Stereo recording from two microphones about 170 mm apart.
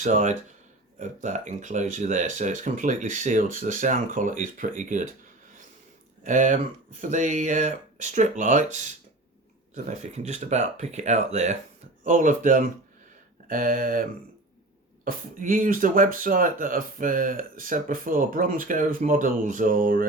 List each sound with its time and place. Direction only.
0.0 s speech: 45° right (ahead or behind)
6.2 s speech: 45° right (ahead or behind)
15.0 s speech: 55° right (ahead or behind)